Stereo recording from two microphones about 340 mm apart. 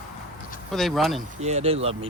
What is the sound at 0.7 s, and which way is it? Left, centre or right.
Speech, centre.